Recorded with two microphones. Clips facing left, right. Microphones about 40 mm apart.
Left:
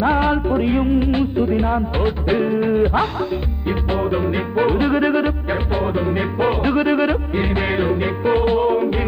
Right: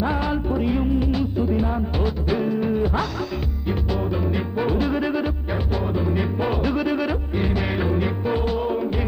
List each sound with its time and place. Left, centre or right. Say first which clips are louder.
0.0 s music: left 6 dB; left